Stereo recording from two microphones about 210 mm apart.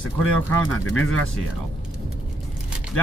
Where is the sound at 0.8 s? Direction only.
75° left (ahead or behind).